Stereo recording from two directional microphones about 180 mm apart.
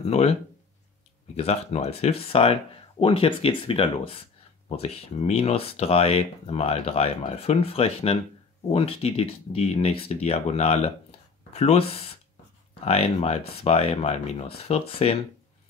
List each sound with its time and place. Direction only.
0.1 s speech: 35° left (ahead or behind)